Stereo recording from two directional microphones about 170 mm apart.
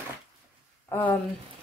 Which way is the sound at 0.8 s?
10° left (ahead or behind).